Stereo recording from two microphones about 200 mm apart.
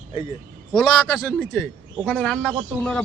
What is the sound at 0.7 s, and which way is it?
A man's voice, 10° left (ahead or behind).